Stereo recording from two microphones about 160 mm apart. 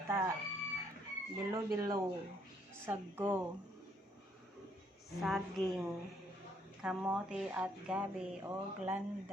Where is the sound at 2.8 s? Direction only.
15° right (ahead or behind).